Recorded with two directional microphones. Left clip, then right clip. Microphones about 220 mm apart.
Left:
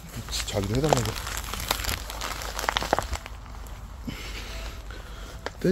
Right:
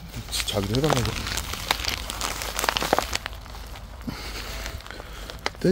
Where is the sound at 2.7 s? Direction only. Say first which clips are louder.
Right 2 dB; 40° right (ahead or behind).